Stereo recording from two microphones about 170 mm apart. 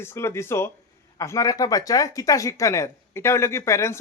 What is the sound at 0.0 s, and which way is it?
Speech, 15° left (ahead or behind).